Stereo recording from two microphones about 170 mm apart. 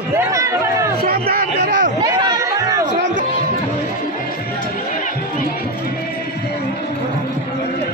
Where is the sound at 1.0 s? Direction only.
60° right (ahead or behind).